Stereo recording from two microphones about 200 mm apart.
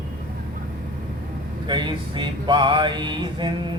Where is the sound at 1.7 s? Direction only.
20° right (ahead or behind).